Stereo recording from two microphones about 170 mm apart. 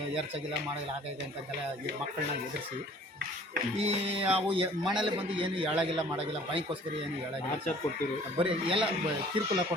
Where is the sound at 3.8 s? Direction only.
35° right (ahead or behind).